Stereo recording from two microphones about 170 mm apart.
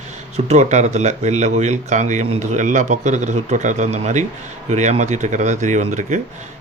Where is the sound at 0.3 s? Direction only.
40° right (ahead or behind).